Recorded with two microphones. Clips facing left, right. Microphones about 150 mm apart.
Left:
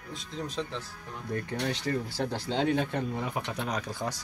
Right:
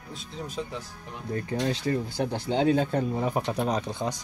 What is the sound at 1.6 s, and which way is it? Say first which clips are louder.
Speech: right 4 dB; 25° right (ahead or behind).